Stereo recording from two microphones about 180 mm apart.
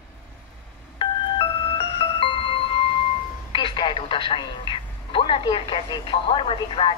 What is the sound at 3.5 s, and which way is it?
Speech, 25° left (ahead or behind).